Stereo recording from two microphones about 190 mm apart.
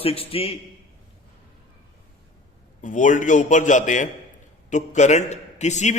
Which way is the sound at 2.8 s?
40° left (ahead or behind).